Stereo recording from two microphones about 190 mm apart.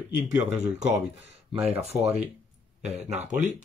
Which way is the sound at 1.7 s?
35° right (ahead or behind).